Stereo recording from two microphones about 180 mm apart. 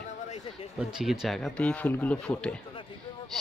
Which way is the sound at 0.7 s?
5° right (ahead or behind).